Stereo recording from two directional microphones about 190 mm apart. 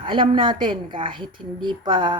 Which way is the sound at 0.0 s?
25° right (ahead or behind).